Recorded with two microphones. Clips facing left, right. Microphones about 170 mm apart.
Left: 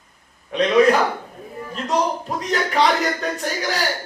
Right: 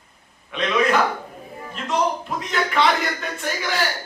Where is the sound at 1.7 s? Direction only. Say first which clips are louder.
Left 1 dB; 40° left (ahead or behind).